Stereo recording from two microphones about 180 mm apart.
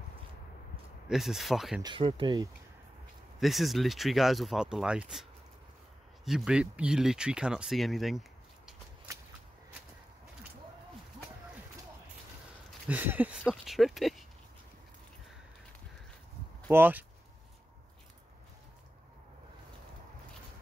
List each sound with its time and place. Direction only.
1.0 s speech: centre (ahead or behind)
1.8 s speech: 25° right (ahead or behind)
3.3 s speech: centre (ahead or behind)
6.2 s speech: 5° right (ahead or behind)
12.8 s speech: 10° right (ahead or behind)
16.7 s speech: 10° right (ahead or behind)